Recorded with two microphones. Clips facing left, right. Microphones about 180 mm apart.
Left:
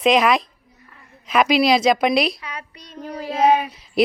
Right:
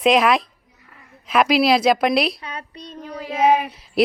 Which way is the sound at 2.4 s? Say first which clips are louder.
Right 1 dB; 30° right (ahead or behind).